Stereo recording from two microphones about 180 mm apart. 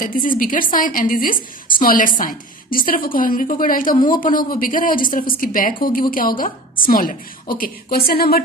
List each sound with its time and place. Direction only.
0.0 s a woman's voice: 50° left (ahead or behind)